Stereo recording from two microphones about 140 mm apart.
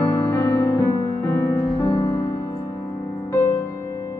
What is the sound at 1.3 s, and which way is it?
Music, 25° left (ahead or behind).